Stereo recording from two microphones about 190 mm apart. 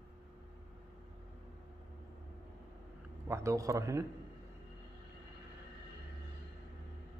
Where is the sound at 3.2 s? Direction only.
15° right (ahead or behind).